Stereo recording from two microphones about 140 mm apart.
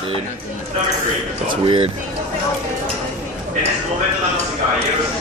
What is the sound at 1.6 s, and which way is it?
Speech, 40° right (ahead or behind).